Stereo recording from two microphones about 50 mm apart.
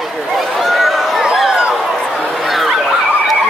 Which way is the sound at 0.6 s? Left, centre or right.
Centre.